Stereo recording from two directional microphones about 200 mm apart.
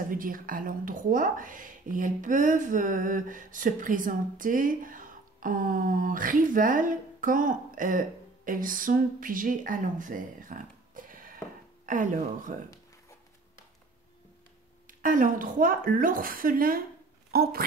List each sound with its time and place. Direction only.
0.1 s speech: 45° right (ahead or behind)
14.9 s speech: 40° right (ahead or behind)